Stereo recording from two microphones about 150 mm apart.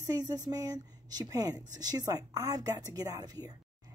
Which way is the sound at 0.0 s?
25° right (ahead or behind).